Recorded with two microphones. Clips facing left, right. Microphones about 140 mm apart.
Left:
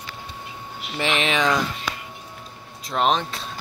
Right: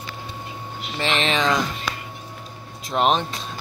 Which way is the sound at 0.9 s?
15° left (ahead or behind).